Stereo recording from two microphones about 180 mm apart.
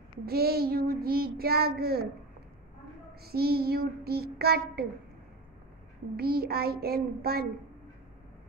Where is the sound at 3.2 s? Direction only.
60° right (ahead or behind).